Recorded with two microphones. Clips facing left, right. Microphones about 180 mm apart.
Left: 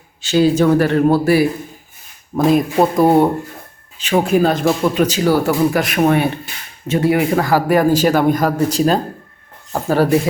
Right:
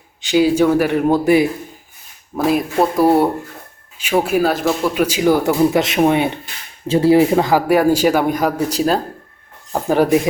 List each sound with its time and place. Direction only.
0.2 s a man's voice: 15° right (ahead or behind)
2.3 s a man's voice: 5° right (ahead or behind)